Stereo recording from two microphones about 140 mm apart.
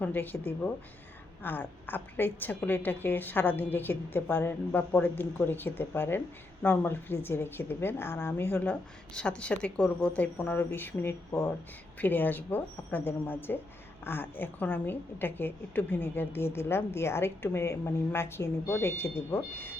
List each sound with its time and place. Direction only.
0.0 s a woman's voice: 15° left (ahead or behind)